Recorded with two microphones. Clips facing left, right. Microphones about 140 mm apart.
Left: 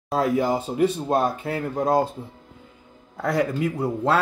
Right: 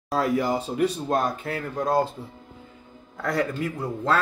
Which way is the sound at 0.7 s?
25° left (ahead or behind).